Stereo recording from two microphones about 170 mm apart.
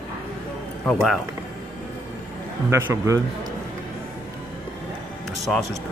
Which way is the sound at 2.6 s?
15° right (ahead or behind).